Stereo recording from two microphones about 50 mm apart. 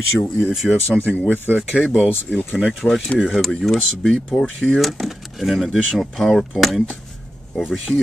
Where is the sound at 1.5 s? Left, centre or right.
Left.